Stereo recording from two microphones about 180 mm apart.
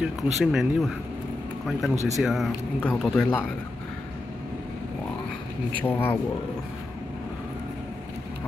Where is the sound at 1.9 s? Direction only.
40° right (ahead or behind).